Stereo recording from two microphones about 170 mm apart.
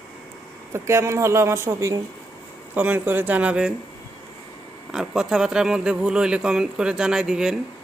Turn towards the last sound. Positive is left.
turn(degrees=-5)  # may be behind; listen again after turning